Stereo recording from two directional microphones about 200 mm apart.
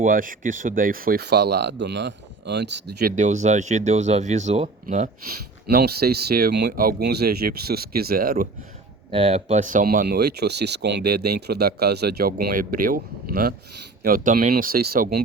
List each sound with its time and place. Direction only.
0.0 s speech: 45° right (ahead or behind)
3.2 s speech: 35° right (ahead or behind)
9.0 s speech: 30° right (ahead or behind); by 15.2 s 45° right (ahead or behind)